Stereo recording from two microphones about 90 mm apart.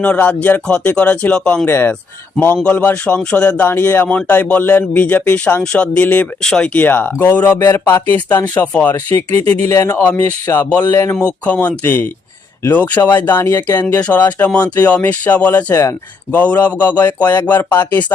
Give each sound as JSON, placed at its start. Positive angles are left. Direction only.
{"t": 0.0, "sound": "speech", "side_deg": 15}
{"t": 1.6, "sound": "speech", "side_deg": 25}
{"t": 10.4, "sound": "a sound", "side_deg": 40}
{"t": 11.4, "sound": "speech", "side_deg": 15}
{"t": 15.7, "sound": "a sound", "side_deg": 35}
{"t": 16.3, "sound": "speech", "side_deg": 20}